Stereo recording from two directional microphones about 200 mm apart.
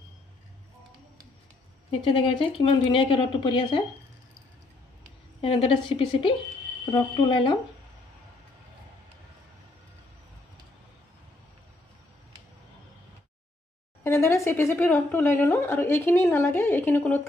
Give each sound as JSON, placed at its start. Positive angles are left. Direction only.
{"t": 1.9, "sound": "a woman's voice", "side_deg": 25}
{"t": 5.4, "sound": "a woman's voice", "side_deg": 25}
{"t": 14.0, "sound": "a woman's voice", "side_deg": 15}